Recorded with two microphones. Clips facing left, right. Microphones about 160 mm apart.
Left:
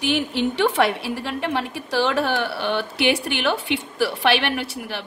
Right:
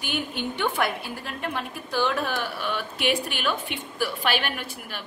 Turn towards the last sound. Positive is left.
turn(degrees=75)  # may be behind; listen again after turning